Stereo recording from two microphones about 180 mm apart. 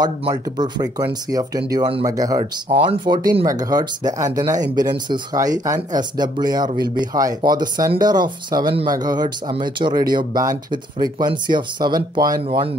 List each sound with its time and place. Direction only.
0.0 s speech: 20° right (ahead or behind)